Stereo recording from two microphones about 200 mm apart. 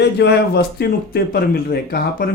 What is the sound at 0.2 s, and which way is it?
Speech, 55° left (ahead or behind).